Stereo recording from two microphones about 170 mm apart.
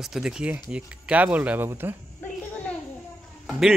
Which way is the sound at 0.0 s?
5° right (ahead or behind).